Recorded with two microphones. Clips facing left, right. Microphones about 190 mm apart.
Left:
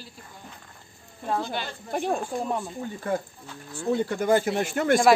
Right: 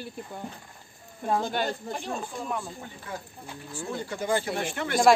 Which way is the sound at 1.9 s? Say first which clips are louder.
Left 7 dB; 55° left (ahead or behind).